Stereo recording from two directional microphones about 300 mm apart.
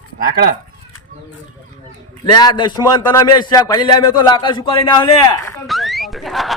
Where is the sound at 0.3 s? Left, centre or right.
Right.